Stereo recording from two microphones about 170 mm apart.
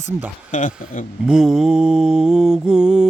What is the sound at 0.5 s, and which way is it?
Speech, 50° left (ahead or behind).